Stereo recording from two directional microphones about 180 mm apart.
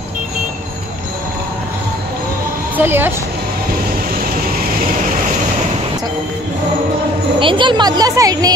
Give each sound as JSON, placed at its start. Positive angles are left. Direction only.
{"t": 2.8, "sound": "speech", "side_deg": -10}
{"t": 7.3, "sound": "a child's voice", "side_deg": -30}